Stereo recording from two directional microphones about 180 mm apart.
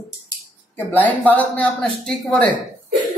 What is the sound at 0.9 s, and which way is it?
Speech, 10° left (ahead or behind).